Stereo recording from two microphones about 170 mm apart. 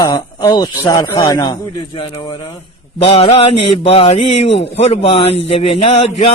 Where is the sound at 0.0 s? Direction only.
20° left (ahead or behind).